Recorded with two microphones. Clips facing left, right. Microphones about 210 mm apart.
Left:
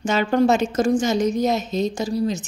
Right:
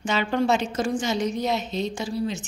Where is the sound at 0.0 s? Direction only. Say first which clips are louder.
Left 5 dB; 45° left (ahead or behind).